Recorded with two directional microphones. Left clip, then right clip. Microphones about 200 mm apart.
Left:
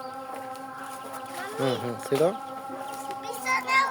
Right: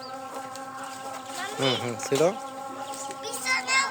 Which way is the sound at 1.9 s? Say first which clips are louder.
Left 1 dB; centre (ahead or behind).